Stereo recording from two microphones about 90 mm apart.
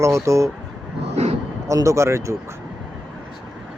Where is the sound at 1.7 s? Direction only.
35° right (ahead or behind).